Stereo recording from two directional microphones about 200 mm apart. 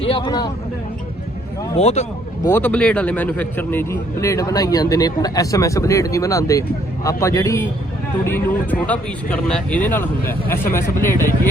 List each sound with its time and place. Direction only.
0.0 s speech: 25° left (ahead or behind)
1.7 s speech: 35° left (ahead or behind)
2.4 s a man's voice: 10° left (ahead or behind)